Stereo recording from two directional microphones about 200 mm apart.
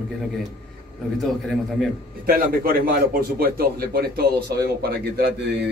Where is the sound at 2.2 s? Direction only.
45° right (ahead or behind).